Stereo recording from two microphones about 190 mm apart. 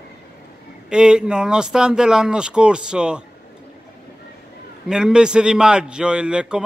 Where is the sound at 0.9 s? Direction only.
5° right (ahead or behind).